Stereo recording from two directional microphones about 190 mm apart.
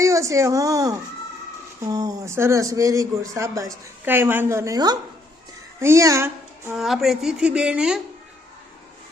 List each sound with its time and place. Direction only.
0.0 s speech: 15° right (ahead or behind)
6.7 s a woman's voice: centre (ahead or behind)